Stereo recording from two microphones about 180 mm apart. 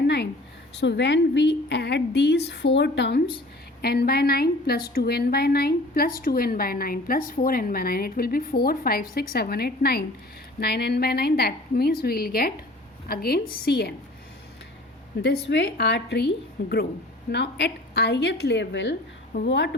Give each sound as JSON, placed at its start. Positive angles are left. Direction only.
{"t": 0.8, "sound": "a woman's voice", "side_deg": 75}
{"t": 15.2, "sound": "a woman's voice", "side_deg": 70}
{"t": 19.5, "sound": "speech", "side_deg": 80}